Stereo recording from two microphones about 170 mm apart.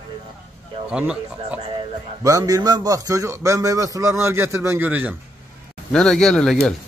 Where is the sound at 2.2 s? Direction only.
20° right (ahead or behind).